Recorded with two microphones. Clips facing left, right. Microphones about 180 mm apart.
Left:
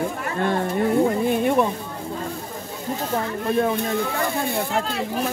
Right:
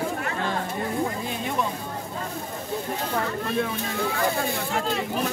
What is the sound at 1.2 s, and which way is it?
Speech, 55° left (ahead or behind).